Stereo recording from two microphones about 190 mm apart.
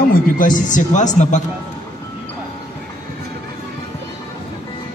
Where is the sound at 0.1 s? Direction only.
45° left (ahead or behind).